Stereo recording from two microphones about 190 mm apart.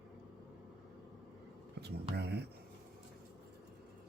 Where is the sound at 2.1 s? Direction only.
60° right (ahead or behind).